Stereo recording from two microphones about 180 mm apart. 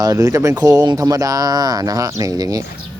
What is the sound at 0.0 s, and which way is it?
Speech, 20° right (ahead or behind).